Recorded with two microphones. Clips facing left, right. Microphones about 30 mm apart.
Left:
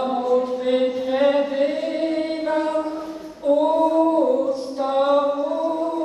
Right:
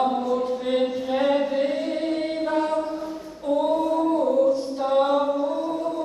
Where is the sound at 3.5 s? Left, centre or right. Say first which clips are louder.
Left 4 dB; centre.